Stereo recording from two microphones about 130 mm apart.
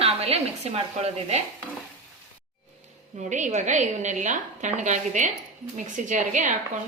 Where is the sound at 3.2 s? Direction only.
70° right (ahead or behind).